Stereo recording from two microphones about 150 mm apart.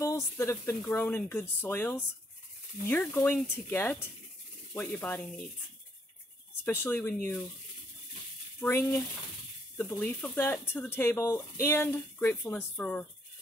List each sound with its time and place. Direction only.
0.0 s speech: 20° left (ahead or behind)
3.1 s speech: 15° left (ahead or behind)
6.6 s speech: 15° left (ahead or behind)
8.5 s speech: 15° left (ahead or behind)